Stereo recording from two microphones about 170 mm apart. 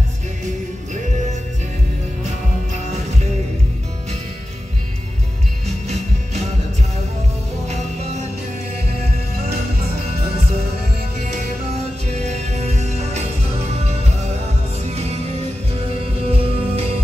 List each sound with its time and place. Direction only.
5.7 s music: 40° right (ahead or behind)
7.6 s music: 40° right (ahead or behind)
12.1 s music: 40° right (ahead or behind)
16.3 s music: 35° right (ahead or behind)